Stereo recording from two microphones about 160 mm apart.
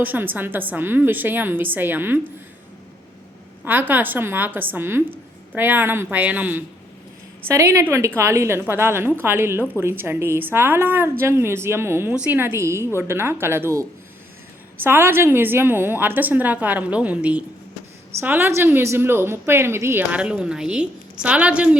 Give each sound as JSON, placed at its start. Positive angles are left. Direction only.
{"t": 0.0, "sound": "a woman's voice", "side_deg": -10}
{"t": 3.6, "sound": "a woman's voice", "side_deg": -10}
{"t": 14.8, "sound": "a woman's voice", "side_deg": -15}